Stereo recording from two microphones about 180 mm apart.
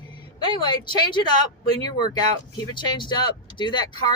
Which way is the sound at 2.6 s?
25° left (ahead or behind).